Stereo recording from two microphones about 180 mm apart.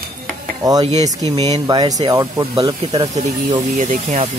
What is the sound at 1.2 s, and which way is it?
Speech, 20° right (ahead or behind).